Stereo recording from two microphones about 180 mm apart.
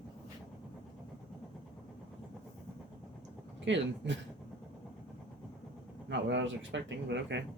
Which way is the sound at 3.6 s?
90° right.